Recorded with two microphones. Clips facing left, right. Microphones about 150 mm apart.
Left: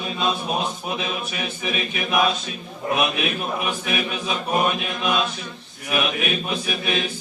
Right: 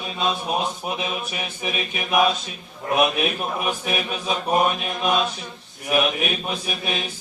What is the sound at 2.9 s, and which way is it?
Speech, 45° right (ahead or behind).